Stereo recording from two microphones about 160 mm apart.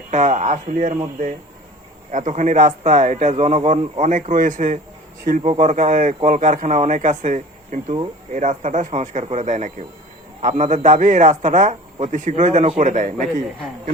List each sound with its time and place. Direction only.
0.1 s a man's voice: 50° right (ahead or behind)
2.1 s a man's voice: 50° right (ahead or behind)